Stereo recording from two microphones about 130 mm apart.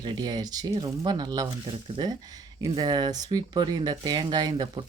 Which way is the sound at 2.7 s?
35° right (ahead or behind).